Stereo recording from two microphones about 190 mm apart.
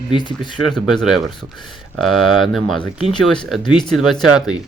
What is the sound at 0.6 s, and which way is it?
Speech, centre (ahead or behind).